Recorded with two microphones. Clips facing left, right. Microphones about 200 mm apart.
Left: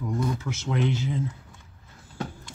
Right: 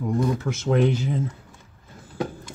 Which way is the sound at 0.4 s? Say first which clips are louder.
Right 6 dB; 45° right (ahead or behind).